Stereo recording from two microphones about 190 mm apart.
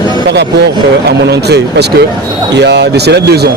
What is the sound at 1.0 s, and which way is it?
Speech, 60° right (ahead or behind).